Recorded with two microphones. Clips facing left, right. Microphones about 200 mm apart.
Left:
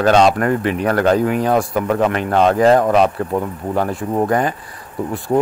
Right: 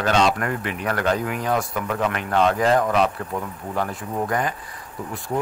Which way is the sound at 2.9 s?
50° left (ahead or behind).